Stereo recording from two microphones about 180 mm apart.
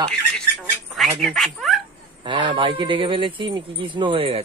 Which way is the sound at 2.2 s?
25° right (ahead or behind).